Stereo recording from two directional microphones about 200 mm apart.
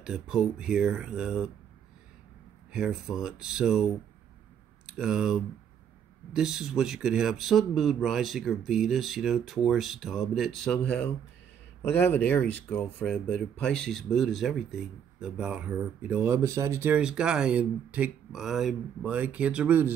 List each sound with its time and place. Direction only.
0.0 s speech: 5° right (ahead or behind)
2.7 s speech: 5° right (ahead or behind)